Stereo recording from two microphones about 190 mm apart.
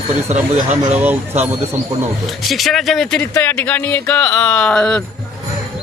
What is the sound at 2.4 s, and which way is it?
A man's voice, centre (ahead or behind).